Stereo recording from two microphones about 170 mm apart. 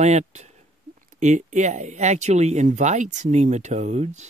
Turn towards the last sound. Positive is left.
turn(degrees=-45)  # may be behind; listen again after turning